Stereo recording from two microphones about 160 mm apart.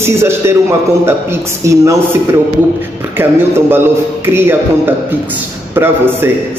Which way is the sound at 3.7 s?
15° right (ahead or behind).